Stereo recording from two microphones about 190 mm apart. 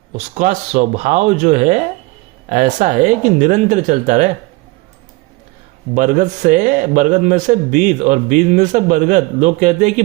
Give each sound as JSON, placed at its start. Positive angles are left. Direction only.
{"t": 0.3, "sound": "a man's voice", "side_deg": -40}
{"t": 5.9, "sound": "a man's voice", "side_deg": -40}